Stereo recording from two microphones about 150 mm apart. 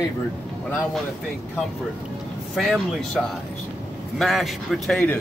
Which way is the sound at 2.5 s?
Centre (ahead or behind).